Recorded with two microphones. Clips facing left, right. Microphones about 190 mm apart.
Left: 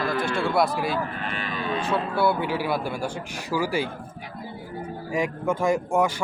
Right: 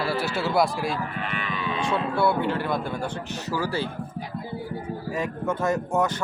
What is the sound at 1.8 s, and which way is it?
Speech, 5° left (ahead or behind).